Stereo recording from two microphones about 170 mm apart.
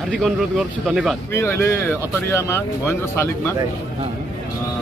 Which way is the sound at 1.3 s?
15° left (ahead or behind).